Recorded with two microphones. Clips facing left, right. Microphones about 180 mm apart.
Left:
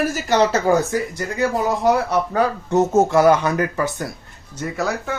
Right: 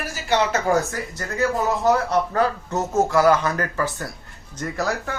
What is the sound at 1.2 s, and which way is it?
Speech, 15° left (ahead or behind).